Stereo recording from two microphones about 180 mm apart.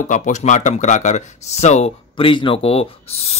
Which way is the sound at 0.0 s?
45° left (ahead or behind).